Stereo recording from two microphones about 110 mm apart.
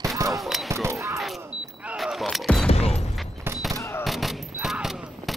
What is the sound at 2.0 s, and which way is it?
Music, centre (ahead or behind).